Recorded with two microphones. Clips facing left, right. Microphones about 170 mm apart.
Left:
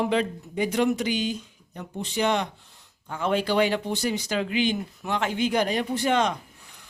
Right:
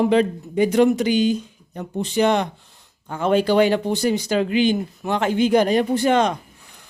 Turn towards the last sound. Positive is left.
turn(degrees=-45)  # may be behind; listen again after turning